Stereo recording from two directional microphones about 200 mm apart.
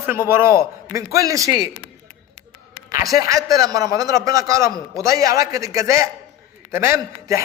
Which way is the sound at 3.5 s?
15° right (ahead or behind).